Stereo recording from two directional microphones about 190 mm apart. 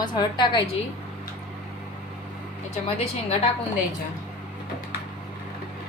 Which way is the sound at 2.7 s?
35° left (ahead or behind).